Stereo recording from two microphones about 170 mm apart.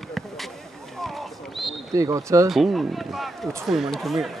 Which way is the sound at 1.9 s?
20° right (ahead or behind).